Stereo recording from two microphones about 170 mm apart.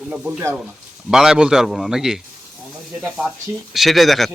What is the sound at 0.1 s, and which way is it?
Speech, 5° right (ahead or behind).